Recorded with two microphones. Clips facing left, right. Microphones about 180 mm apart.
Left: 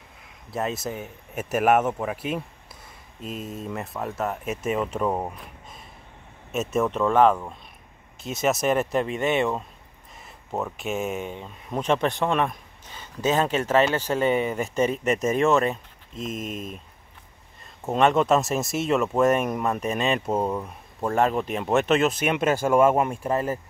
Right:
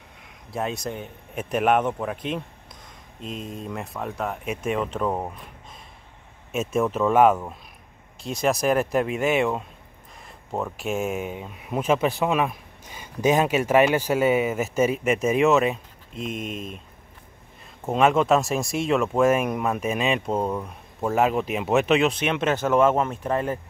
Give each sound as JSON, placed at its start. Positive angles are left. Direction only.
{"t": 0.2, "sound": "speech", "side_deg": 0}
{"t": 6.5, "sound": "speech", "side_deg": 0}
{"t": 8.2, "sound": "speech", "side_deg": 5}
{"t": 16.3, "sound": "speech", "side_deg": 45}
{"t": 17.8, "sound": "speech", "side_deg": 0}